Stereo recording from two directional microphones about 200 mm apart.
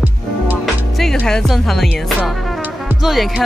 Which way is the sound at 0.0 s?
5° right (ahead or behind).